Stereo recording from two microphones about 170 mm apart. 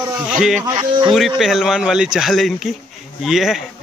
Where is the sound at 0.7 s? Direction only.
30° right (ahead or behind).